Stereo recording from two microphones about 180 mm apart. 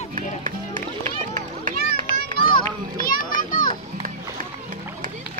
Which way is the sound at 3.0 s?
50° left (ahead or behind).